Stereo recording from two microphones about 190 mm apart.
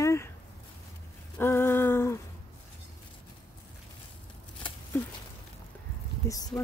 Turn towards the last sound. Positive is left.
turn(degrees=15)  # may be behind; listen again after turning